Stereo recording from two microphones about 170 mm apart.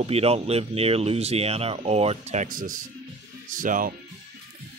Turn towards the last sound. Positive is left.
turn(degrees=-50)  # may be behind; listen again after turning